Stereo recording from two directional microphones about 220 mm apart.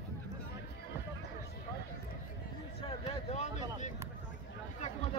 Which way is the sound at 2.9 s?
30° left (ahead or behind).